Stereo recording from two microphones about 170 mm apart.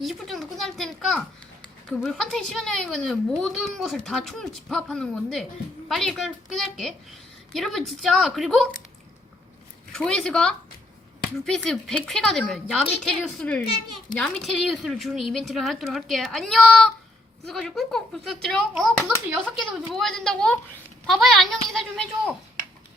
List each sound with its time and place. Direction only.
0.0 s a child's voice: centre (ahead or behind)
9.9 s a child's voice: 5° left (ahead or behind)